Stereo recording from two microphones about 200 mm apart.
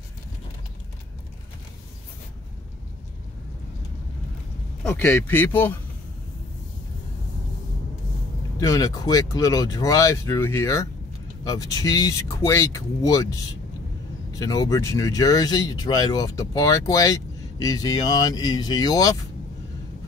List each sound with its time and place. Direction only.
4.8 s speech: 10° left (ahead or behind)
8.5 s speech: 15° left (ahead or behind)